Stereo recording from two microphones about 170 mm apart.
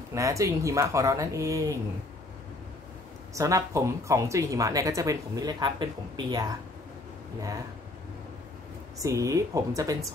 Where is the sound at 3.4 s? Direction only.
20° right (ahead or behind).